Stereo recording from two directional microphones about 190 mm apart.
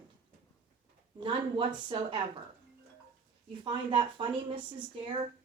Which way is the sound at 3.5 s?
25° right (ahead or behind).